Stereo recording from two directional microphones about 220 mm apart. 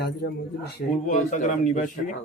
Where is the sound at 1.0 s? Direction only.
35° left (ahead or behind).